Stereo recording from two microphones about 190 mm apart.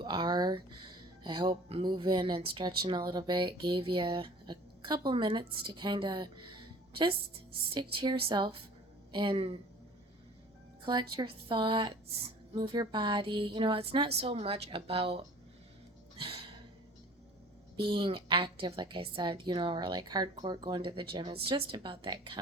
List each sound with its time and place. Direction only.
0.0 s a woman's voice: 25° right (ahead or behind)
8.2 s a woman's voice: 25° right (ahead or behind)
11.1 s a woman's voice: 25° right (ahead or behind)
16.1 s a sound: 30° right (ahead or behind)
17.8 s a woman's voice: 25° right (ahead or behind)